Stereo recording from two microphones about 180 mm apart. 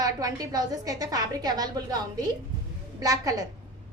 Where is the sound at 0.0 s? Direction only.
20° right (ahead or behind).